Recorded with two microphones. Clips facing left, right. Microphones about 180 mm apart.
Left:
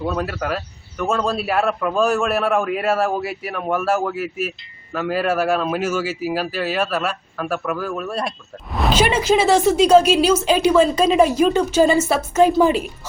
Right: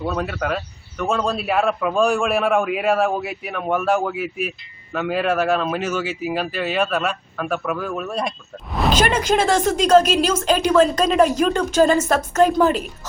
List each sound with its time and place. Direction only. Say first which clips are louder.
0.0 s speech: even; 5° left (ahead or behind)